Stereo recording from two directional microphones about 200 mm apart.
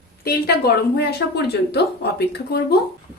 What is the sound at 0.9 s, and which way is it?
A woman's voice, 55° left (ahead or behind).